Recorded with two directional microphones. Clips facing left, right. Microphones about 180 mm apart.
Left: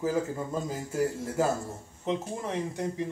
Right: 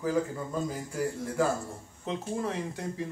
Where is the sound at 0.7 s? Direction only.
25° left (ahead or behind).